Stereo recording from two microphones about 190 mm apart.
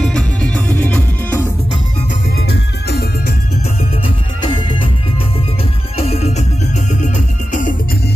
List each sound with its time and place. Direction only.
0.0 s music: 5° left (ahead or behind)
2.5 s music: 55° left (ahead or behind)
4.4 s music: 25° left (ahead or behind)
5.9 s music: 35° left (ahead or behind)